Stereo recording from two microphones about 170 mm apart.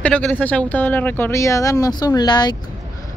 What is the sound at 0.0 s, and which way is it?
Speech, 5° left (ahead or behind).